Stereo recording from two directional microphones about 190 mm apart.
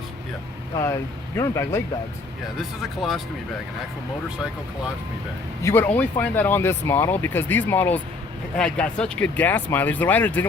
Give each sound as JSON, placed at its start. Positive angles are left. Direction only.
{"t": 1.4, "sound": "speech", "side_deg": 15}
{"t": 2.6, "sound": "speech", "side_deg": 0}
{"t": 5.6, "sound": "speech", "side_deg": 10}